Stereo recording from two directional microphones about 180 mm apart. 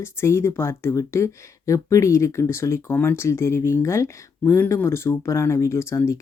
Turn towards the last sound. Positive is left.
turn(degrees=15)  # may be behind; listen again after turning